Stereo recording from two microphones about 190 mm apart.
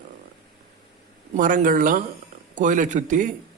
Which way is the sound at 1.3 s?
45° right (ahead or behind).